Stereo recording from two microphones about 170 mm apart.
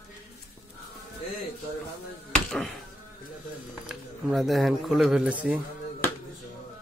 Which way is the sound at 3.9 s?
Centre (ahead or behind).